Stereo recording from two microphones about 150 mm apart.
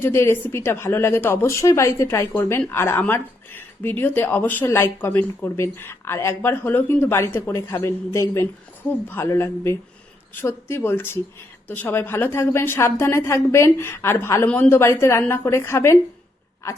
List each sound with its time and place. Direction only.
0.0 s a woman's voice: 15° left (ahead or behind)